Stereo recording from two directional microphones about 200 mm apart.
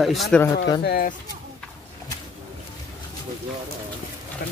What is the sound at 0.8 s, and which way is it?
Speech, 50° left (ahead or behind).